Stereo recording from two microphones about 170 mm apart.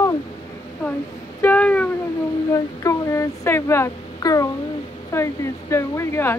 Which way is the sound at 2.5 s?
20° left (ahead or behind).